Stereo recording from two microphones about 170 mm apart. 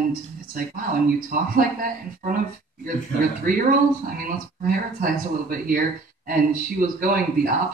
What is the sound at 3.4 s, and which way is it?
Speech, 55° right (ahead or behind).